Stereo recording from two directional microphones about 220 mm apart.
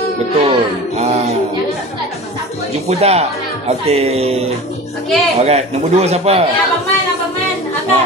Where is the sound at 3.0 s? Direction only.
30° right (ahead or behind).